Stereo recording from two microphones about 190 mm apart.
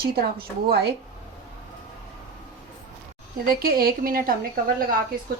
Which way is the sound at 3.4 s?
50° right (ahead or behind).